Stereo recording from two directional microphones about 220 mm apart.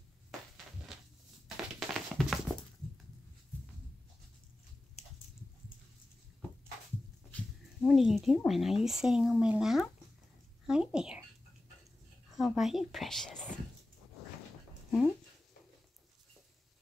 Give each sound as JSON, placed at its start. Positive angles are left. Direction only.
{"t": 1.8, "sound": "music", "side_deg": 0}
{"t": 7.2, "sound": "a sound", "side_deg": 5}
{"t": 8.5, "sound": "speech", "side_deg": 0}
{"t": 12.4, "sound": "speech", "side_deg": 0}
{"t": 14.9, "sound": "speech", "side_deg": 5}